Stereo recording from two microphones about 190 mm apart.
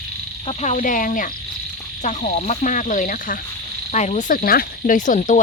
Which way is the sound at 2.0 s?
40° left (ahead or behind).